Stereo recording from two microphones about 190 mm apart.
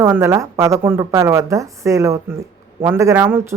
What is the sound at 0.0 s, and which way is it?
Speech, 10° right (ahead or behind).